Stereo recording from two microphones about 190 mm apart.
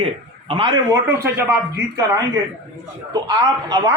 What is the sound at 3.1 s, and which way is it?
Speech, 20° right (ahead or behind).